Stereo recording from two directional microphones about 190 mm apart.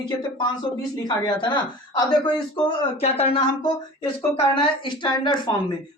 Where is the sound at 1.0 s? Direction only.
25° left (ahead or behind).